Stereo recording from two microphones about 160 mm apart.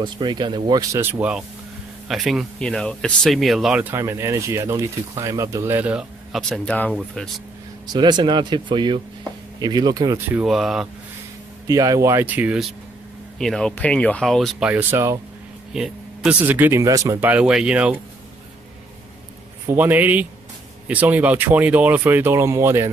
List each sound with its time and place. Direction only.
0.0 s speech: 30° right (ahead or behind)
1.0 s speech: 10° right (ahead or behind)
7.8 s speech: 25° right (ahead or behind)
10.4 s speech: centre (ahead or behind)
11.6 s speech: 20° right (ahead or behind)
13.4 s speech: 5° left (ahead or behind)
14.7 s speech: 10° right (ahead or behind)
15.7 s speech: 5° right (ahead or behind)
19.7 s speech: 10° right (ahead or behind)